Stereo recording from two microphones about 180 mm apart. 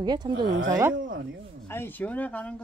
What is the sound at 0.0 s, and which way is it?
Speech, 25° right (ahead or behind).